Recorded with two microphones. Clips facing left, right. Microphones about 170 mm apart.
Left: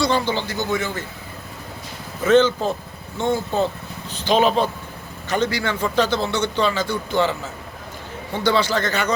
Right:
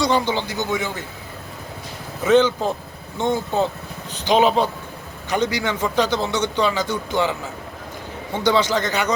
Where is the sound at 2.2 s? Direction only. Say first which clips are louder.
Even; 15° right (ahead or behind).